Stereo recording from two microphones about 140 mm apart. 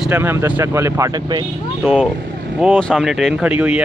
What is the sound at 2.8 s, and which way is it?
Speech, centre (ahead or behind).